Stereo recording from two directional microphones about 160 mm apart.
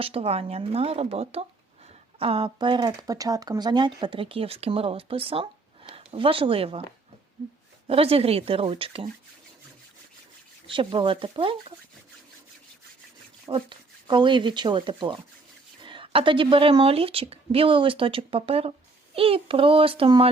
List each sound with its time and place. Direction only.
0.0 s speech: 40° right (ahead or behind)
7.9 s speech: 35° right (ahead or behind)
10.7 s speech: 30° right (ahead or behind)
13.5 s speech: 30° right (ahead or behind)